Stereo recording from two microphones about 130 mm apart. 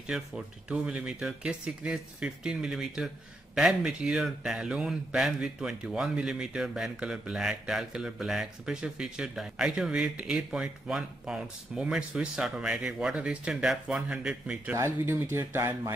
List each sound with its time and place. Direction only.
0.1 s a man's voice: 5° right (ahead or behind)
14.8 s speech: 20° right (ahead or behind)